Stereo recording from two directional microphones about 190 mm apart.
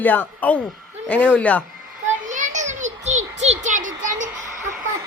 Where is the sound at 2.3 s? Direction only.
40° right (ahead or behind).